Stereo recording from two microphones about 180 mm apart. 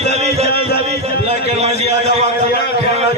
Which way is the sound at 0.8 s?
35° right (ahead or behind).